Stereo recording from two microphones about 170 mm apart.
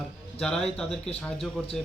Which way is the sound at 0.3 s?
5° left (ahead or behind).